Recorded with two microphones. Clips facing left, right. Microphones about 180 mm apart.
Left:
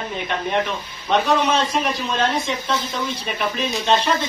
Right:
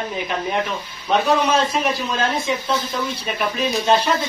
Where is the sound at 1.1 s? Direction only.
5° right (ahead or behind).